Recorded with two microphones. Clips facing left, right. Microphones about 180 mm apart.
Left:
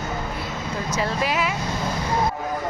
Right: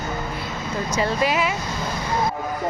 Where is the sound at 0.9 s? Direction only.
Centre (ahead or behind).